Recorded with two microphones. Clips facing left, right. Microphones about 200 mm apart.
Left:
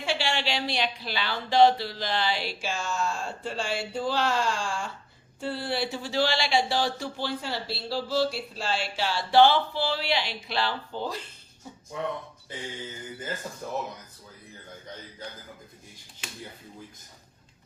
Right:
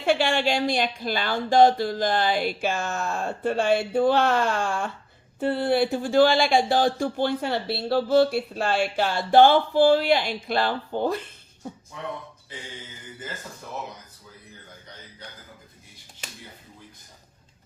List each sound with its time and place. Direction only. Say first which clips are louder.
0.0 s speech: right 7 dB; 50° right (ahead or behind)